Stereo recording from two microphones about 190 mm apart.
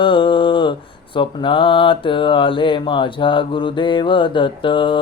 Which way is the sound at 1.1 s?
25° left (ahead or behind).